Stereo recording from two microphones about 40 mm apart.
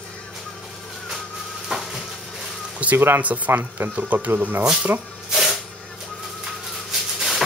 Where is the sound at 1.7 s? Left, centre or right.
Centre.